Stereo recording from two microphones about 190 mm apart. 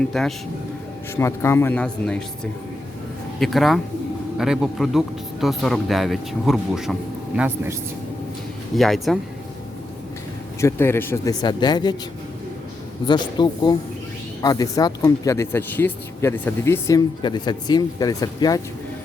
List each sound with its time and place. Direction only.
0.0 s speech: centre (ahead or behind)
1.1 s speech: 15° left (ahead or behind); by 7.8 s 10° right (ahead or behind)
8.7 s speech: centre (ahead or behind)
10.6 s speech: 15° left (ahead or behind)
13.1 s speech: 25° left (ahead or behind)